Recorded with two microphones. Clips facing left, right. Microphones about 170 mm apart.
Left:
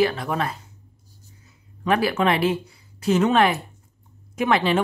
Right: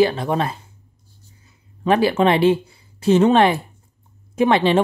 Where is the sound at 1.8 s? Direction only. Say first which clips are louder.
Right 4 dB; 25° right (ahead or behind).